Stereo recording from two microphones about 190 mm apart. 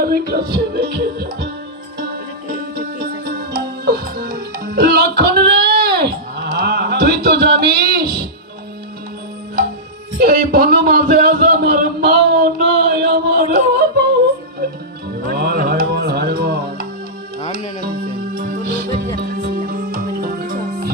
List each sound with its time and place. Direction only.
0.0 s music: 55° right (ahead or behind)
2.7 s music: 55° right (ahead or behind)
10.2 s a sound: 50° right (ahead or behind)
15.3 s music: 55° right (ahead or behind)
18.3 s music: 50° right (ahead or behind)